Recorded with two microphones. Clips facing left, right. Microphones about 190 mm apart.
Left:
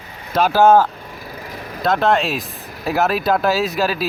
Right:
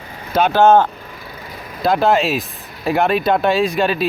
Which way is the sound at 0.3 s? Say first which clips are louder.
Right 1 dB; 5° left (ahead or behind).